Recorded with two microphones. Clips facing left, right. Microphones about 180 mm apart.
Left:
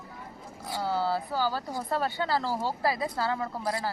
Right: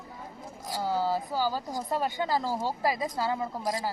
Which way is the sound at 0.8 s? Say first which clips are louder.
Even; 15° right (ahead or behind).